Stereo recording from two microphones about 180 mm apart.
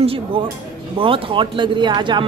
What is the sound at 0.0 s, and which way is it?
A man's voice, 30° right (ahead or behind).